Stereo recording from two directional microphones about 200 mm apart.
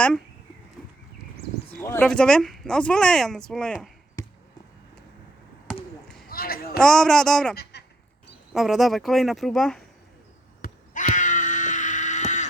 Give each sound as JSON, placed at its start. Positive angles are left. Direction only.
{"t": 1.8, "sound": "speech", "side_deg": 10}
{"t": 4.2, "sound": "basketball bounce", "side_deg": 15}
{"t": 6.2, "sound": "a sound", "side_deg": 50}
{"t": 6.7, "sound": "speech", "side_deg": 5}
{"t": 7.5, "sound": "a sound", "side_deg": 55}
{"t": 8.5, "sound": "speech", "side_deg": 0}
{"t": 10.6, "sound": "screaming", "side_deg": 40}